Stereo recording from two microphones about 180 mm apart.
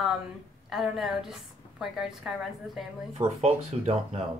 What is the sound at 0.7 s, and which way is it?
A woman's voice, centre (ahead or behind).